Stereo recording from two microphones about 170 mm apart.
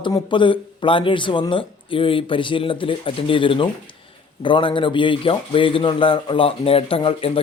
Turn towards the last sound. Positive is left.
turn(degrees=30)  # may be behind; listen again after turning